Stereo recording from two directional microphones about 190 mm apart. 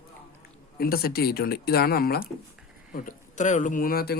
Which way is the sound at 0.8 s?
55° left (ahead or behind).